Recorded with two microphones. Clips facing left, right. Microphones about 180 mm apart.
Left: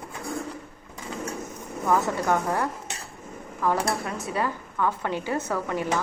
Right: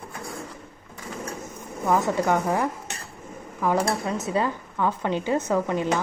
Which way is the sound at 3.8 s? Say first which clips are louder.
Right 3 dB; 20° right (ahead or behind).